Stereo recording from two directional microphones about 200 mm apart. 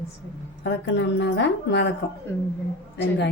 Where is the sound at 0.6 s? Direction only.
60° left (ahead or behind).